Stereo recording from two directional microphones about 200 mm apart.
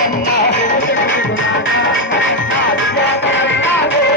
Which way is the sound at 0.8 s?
70° left (ahead or behind).